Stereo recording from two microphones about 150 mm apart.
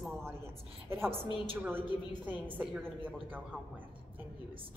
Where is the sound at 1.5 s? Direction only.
15° right (ahead or behind).